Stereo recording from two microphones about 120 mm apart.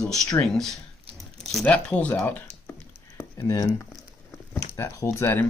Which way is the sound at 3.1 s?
25° left (ahead or behind).